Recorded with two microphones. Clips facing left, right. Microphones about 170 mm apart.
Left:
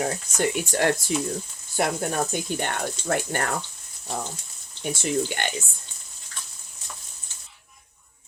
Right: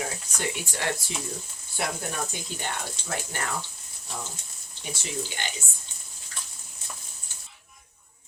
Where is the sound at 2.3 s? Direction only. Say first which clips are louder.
Left 7 dB; 55° left (ahead or behind).